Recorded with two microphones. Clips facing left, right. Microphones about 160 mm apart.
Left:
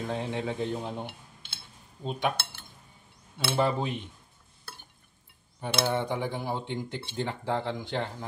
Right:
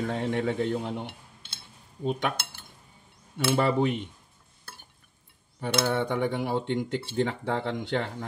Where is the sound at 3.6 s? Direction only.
65° right (ahead or behind).